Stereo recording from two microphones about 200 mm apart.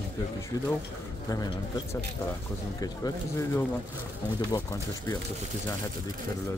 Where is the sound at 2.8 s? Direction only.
15° left (ahead or behind).